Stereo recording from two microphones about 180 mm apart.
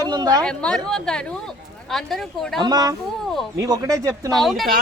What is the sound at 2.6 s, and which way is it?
Speech, 20° right (ahead or behind).